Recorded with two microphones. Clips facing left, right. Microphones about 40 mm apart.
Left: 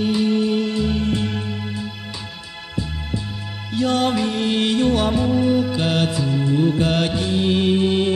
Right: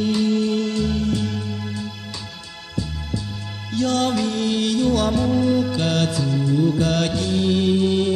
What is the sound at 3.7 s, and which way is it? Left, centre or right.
Music, centre.